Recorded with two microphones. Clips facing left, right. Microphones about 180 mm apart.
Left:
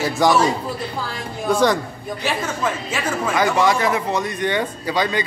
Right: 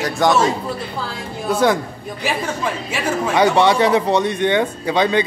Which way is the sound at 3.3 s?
30° right (ahead or behind).